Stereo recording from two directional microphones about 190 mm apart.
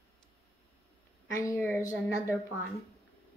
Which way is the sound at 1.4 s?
15° left (ahead or behind).